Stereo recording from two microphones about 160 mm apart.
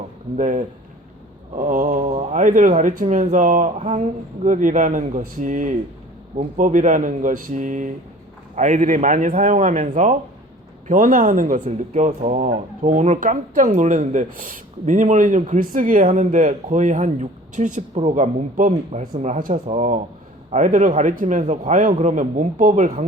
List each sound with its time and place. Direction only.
0.3 s speech: 50° right (ahead or behind)